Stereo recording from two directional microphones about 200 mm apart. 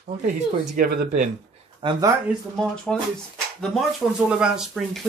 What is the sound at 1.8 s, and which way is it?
Speech, 25° right (ahead or behind).